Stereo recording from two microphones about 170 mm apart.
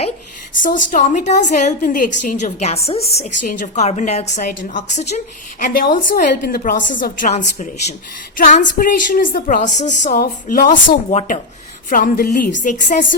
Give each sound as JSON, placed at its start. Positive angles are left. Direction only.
{"t": 0.9, "sound": "a woman's voice", "side_deg": 50}
{"t": 11.9, "sound": "a woman's voice", "side_deg": 55}